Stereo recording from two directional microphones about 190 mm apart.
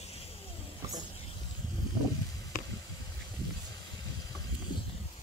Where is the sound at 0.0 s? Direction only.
30° left (ahead or behind).